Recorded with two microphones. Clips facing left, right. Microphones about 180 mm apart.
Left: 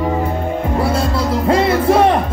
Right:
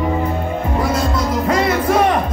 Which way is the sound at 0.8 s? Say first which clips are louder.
Left 1 dB; 30° left (ahead or behind).